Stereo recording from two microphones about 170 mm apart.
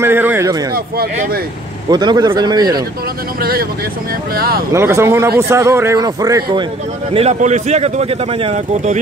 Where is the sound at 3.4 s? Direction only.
60° right (ahead or behind).